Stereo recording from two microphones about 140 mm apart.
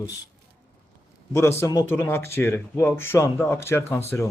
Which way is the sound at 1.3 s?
20° left (ahead or behind).